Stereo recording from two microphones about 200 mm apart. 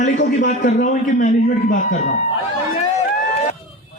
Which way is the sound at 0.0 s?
35° left (ahead or behind).